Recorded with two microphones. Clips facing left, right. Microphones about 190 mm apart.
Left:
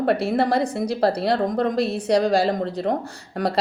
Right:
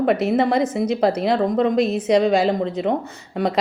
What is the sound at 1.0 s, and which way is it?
Speech, 35° left (ahead or behind).